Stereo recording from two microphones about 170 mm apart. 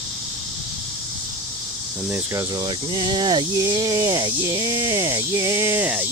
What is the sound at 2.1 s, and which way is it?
Speech, 15° right (ahead or behind).